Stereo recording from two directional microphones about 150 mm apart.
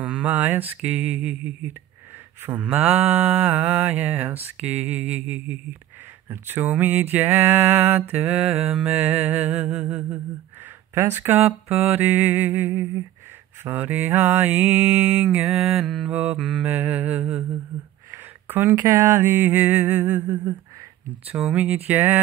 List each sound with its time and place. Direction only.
0.0 s music: 10° right (ahead or behind)
20.2 s a sound: 25° right (ahead or behind)
21.3 s music: 10° right (ahead or behind)